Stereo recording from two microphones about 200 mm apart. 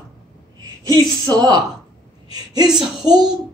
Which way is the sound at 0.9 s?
20° right (ahead or behind).